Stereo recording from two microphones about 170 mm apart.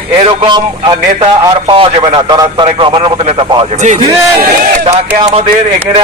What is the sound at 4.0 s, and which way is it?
Speech, 20° right (ahead or behind).